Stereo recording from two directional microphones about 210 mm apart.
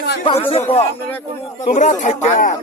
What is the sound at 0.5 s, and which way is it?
Speech, 30° left (ahead or behind).